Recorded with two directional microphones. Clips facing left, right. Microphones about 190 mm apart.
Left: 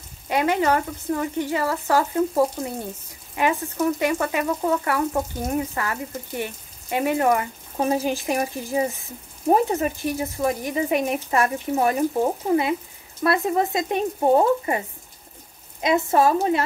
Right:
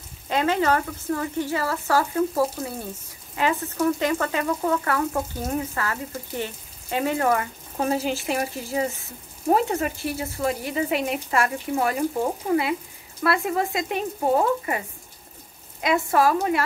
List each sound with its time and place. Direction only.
0.3 s frying: 15° left (ahead or behind)
9.5 s speech: 20° left (ahead or behind)